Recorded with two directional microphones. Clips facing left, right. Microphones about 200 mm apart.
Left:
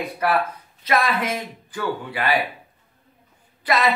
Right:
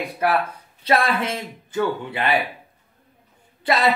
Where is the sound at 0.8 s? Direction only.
30° right (ahead or behind).